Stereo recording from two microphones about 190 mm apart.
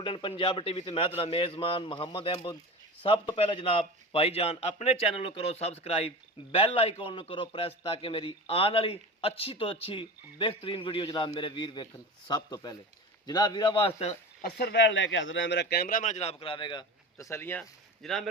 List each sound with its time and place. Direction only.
0.0 s a man's voice: 25° left (ahead or behind)
14.4 s speech: 60° left (ahead or behind); by 18.3 s centre (ahead or behind)